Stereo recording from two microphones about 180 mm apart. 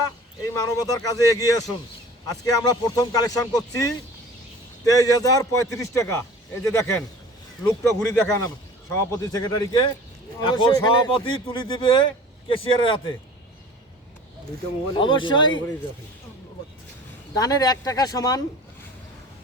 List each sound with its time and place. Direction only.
0.4 s a man's voice: 20° left (ahead or behind)
14.9 s speech: 25° left (ahead or behind)
17.3 s speech: 20° left (ahead or behind)